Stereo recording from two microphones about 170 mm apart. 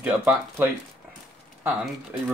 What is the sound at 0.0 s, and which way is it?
Speech, 10° right (ahead or behind).